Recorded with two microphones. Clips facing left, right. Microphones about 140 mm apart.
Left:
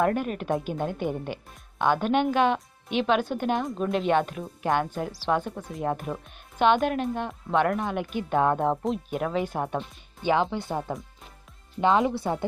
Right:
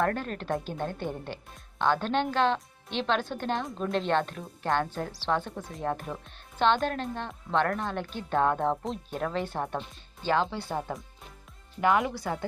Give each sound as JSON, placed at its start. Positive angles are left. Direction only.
{"t": 0.0, "sound": "a woman's voice", "side_deg": 10}
{"t": 10.8, "sound": "speech", "side_deg": 0}
{"t": 11.8, "sound": "speech", "side_deg": 25}